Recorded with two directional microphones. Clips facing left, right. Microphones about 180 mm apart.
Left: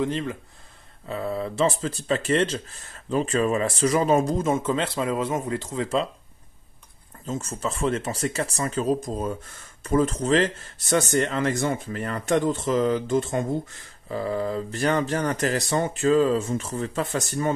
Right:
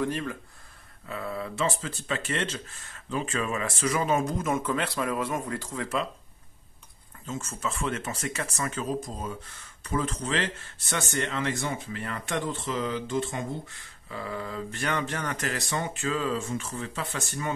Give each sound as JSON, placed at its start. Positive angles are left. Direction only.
{"t": 0.0, "sound": "speech", "side_deg": 20}
{"t": 7.2, "sound": "speech", "side_deg": 35}